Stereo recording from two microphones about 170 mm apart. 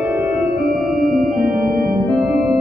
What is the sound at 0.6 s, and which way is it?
Organ, 60° right (ahead or behind).